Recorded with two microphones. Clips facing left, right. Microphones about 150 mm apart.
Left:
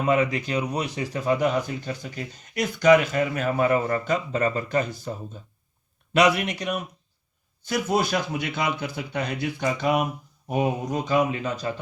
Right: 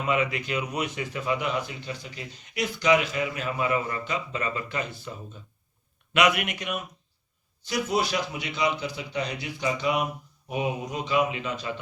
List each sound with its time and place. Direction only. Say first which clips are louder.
0.0 s speech: left 4 dB; 40° left (ahead or behind)
7.6 s speech: left 3 dB; 50° left (ahead or behind)